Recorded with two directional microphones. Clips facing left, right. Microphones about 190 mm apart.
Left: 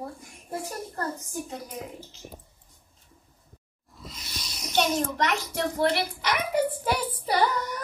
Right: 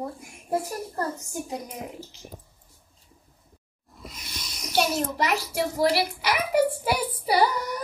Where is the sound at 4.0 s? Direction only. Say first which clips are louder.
Right 1 dB; 25° left (ahead or behind).